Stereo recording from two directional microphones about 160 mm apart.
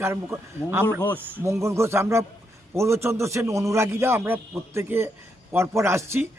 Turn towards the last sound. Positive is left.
turn(degrees=-15)  # may be behind; listen again after turning